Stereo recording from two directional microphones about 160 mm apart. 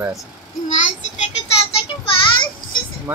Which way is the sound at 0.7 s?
45° left (ahead or behind).